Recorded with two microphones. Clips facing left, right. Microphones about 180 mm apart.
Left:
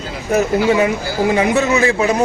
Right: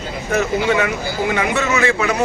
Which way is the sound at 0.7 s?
30° left (ahead or behind).